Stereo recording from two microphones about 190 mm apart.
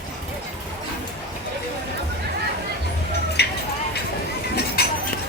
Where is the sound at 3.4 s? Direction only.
60° left (ahead or behind).